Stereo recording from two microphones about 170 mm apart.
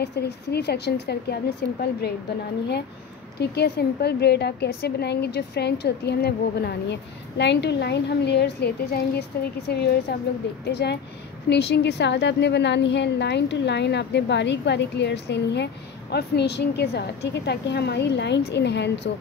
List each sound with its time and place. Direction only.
0.0 s a woman's voice: 75° left (ahead or behind)
1.8 s a woman's voice: 70° left (ahead or behind)
3.3 s a woman's voice: 75° left (ahead or behind)
10.6 s a woman's voice: 75° left (ahead or behind)